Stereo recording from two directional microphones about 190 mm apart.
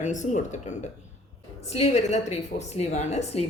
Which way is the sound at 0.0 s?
40° left (ahead or behind).